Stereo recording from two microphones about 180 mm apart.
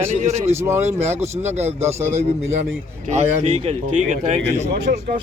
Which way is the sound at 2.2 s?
35° right (ahead or behind).